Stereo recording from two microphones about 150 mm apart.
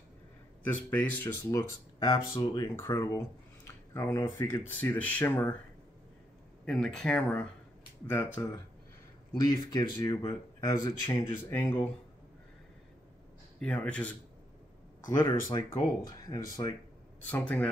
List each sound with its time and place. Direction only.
0.7 s speech: 10° left (ahead or behind); by 2.7 s 30° left (ahead or behind)
2.7 s speech: 15° left (ahead or behind)
6.6 s speech: 5° left (ahead or behind)
8.4 s speech: 25° left (ahead or behind)
13.6 s speech: 10° left (ahead or behind)
15.1 s speech: 20° left (ahead or behind)